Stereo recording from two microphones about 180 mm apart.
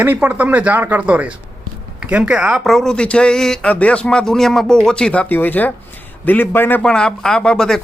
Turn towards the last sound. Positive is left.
turn(degrees=5)  # may be behind; listen again after turning